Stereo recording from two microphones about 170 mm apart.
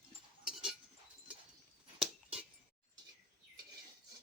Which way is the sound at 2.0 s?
5° right (ahead or behind).